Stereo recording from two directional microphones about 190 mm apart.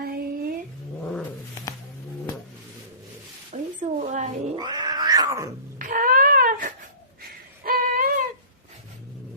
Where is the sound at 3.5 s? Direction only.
40° right (ahead or behind).